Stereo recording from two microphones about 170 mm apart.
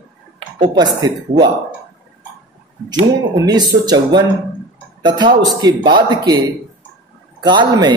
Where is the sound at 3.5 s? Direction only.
25° right (ahead or behind).